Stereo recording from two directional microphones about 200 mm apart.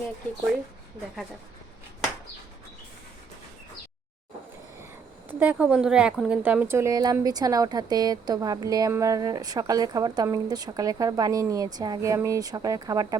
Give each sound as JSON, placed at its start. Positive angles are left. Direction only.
{"t": 5.3, "sound": "speech", "side_deg": -10}